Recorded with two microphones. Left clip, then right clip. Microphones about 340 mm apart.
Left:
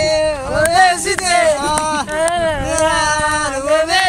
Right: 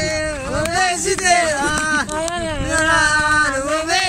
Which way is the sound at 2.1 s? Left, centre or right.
Left.